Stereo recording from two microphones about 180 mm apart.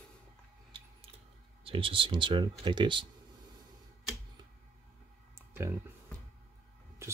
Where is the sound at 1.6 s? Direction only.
30° right (ahead or behind).